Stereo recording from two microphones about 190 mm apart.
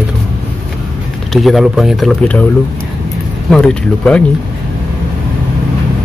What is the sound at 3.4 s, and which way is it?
Speech, 5° left (ahead or behind).